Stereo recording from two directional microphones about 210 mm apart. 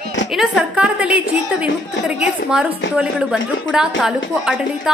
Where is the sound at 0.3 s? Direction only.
5° right (ahead or behind).